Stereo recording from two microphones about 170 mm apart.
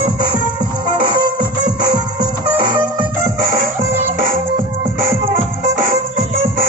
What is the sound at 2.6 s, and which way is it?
Music, 30° right (ahead or behind).